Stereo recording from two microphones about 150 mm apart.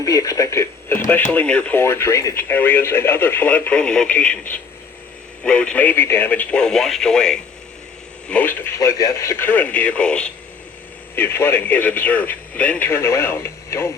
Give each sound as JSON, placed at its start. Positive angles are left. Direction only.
{"t": 0.0, "sound": "speech", "side_deg": 20}